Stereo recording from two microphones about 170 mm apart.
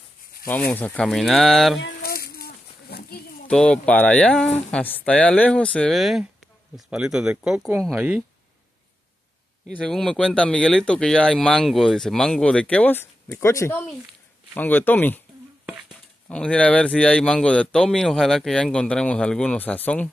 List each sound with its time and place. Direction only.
0.5 s speech: 5° left (ahead or behind)
1.8 s a sound: 75° left (ahead or behind)
3.4 s speech: 5° left (ahead or behind)
9.7 s speech: 5° left (ahead or behind)
15.6 s a sound: 5° right (ahead or behind)
16.3 s speech: 5° left (ahead or behind)